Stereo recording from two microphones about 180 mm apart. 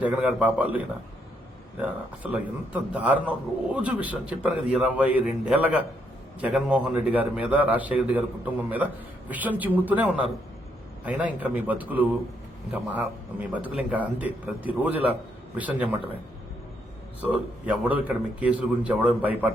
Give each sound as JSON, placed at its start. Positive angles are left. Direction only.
{"t": 0.0, "sound": "a man's voice", "side_deg": -5}
{"t": 1.8, "sound": "a man's voice", "side_deg": -10}
{"t": 11.3, "sound": "a man's voice", "side_deg": -10}
{"t": 17.2, "sound": "a man's voice", "side_deg": -10}